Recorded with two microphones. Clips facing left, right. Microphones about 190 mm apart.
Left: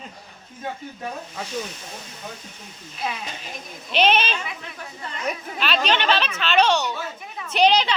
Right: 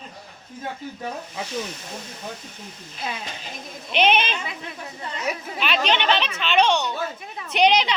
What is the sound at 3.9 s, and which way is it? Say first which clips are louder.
Speech: even; 15° right (ahead or behind).